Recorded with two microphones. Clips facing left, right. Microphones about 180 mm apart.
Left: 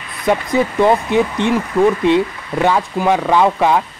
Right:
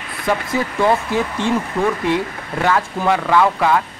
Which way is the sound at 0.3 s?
20° left (ahead or behind).